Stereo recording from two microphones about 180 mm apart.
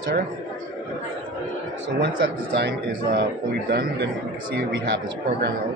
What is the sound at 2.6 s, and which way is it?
A man's voice, 65° right (ahead or behind).